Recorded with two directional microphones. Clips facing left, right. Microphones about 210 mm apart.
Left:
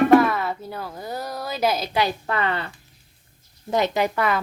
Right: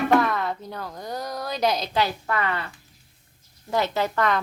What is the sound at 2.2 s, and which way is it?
Speech, 30° left (ahead or behind).